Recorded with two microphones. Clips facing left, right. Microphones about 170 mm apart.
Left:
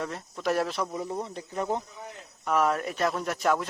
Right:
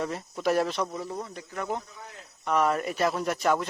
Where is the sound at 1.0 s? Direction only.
25° left (ahead or behind).